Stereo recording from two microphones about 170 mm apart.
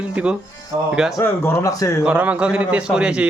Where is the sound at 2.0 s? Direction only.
10° right (ahead or behind).